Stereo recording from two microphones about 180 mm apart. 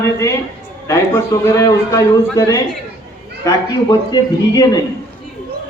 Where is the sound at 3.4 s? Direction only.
20° left (ahead or behind).